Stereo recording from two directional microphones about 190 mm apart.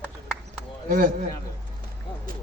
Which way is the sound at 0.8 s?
45° right (ahead or behind).